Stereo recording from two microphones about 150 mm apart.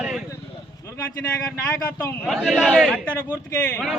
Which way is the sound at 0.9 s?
10° left (ahead or behind).